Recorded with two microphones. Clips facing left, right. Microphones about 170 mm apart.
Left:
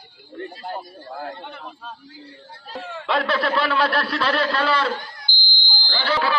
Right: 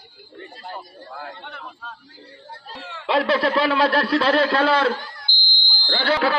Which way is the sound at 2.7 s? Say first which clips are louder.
Left 6 dB; 50° left (ahead or behind).